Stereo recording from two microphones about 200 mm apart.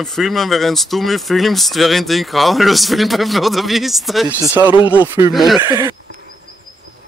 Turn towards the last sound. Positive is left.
turn(degrees=-20)  # may be behind; listen again after turning